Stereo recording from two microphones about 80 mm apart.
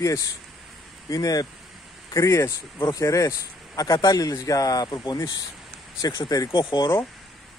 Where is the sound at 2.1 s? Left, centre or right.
Left.